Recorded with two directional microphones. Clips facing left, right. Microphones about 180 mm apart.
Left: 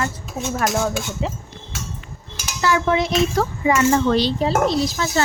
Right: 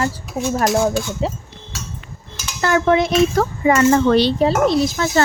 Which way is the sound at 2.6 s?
50° right (ahead or behind).